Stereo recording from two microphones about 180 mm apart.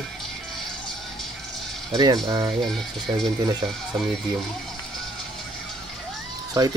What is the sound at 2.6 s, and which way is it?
Speech, centre (ahead or behind).